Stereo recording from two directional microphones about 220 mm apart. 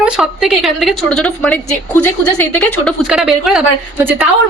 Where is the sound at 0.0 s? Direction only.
Centre (ahead or behind).